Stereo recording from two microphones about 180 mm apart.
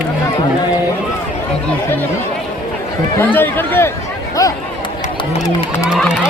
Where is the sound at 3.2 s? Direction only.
10° left (ahead or behind).